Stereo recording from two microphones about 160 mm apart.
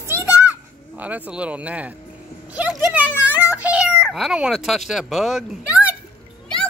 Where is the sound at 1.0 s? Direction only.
10° right (ahead or behind).